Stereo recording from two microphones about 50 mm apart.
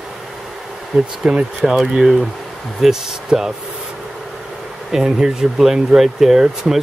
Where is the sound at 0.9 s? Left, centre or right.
Centre.